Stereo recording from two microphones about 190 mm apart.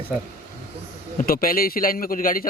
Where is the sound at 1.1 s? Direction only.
50° left (ahead or behind).